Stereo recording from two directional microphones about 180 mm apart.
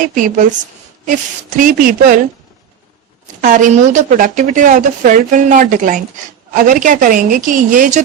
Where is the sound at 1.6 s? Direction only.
50° right (ahead or behind).